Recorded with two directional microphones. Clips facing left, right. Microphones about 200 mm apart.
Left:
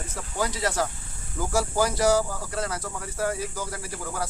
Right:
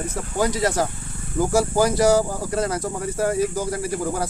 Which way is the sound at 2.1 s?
40° right (ahead or behind).